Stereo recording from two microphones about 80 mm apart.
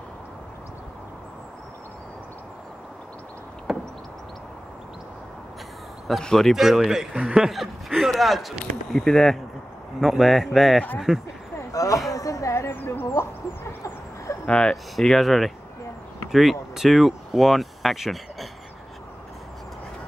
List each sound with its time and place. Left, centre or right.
3.7 s door: centre
6.0 s speech: centre
11.7 s speech: left
12.1 s a sound: left
14.4 s speech: centre